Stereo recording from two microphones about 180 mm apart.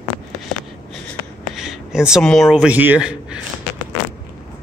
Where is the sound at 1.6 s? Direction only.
5° right (ahead or behind).